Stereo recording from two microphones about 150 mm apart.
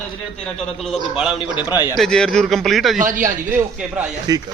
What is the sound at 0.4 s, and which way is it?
Speech, centre (ahead or behind).